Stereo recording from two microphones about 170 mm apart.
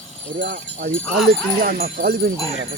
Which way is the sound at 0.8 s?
55° right (ahead or behind).